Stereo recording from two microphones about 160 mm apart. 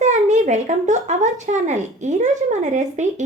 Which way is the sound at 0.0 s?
45° right (ahead or behind).